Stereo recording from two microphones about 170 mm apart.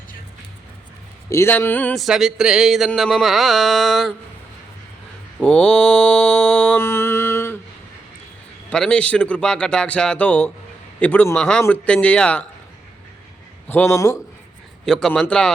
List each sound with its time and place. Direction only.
1.3 s a man's voice: 15° left (ahead or behind)
2.0 s a sound: centre (ahead or behind)
5.4 s mantra: 5° left (ahead or behind)
8.7 s a man's voice: 5° left (ahead or behind)
13.7 s a man's voice: 15° left (ahead or behind)
14.8 s a sound: 5° left (ahead or behind)